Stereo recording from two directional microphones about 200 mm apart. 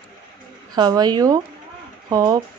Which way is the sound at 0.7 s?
20° right (ahead or behind).